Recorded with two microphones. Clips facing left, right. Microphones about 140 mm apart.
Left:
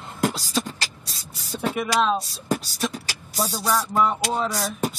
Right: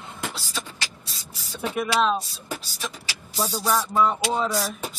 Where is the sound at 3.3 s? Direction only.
Centre (ahead or behind).